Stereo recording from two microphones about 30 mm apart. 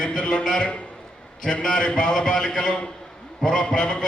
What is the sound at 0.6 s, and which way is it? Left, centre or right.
A man's voice, left.